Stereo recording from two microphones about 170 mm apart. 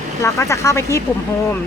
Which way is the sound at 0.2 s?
15° left (ahead or behind).